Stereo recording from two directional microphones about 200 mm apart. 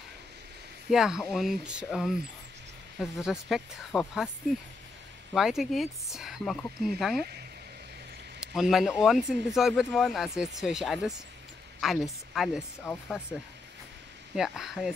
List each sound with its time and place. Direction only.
0.8 s speech: 5° right (ahead or behind)
5.3 s speech: centre (ahead or behind)
8.4 s speech: centre (ahead or behind)
12.9 s speech: 15° left (ahead or behind)
14.3 s speech: centre (ahead or behind)